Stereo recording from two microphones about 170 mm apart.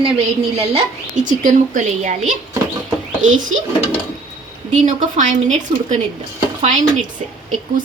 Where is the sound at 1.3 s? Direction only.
50° right (ahead or behind).